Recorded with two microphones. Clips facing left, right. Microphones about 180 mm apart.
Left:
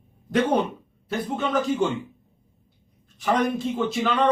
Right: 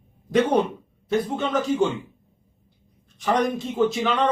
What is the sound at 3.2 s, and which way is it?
Speech, centre (ahead or behind).